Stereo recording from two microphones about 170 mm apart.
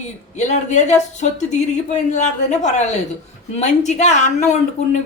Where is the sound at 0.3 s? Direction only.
45° left (ahead or behind).